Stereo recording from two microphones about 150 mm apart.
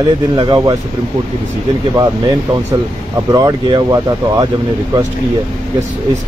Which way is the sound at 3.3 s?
25° right (ahead or behind).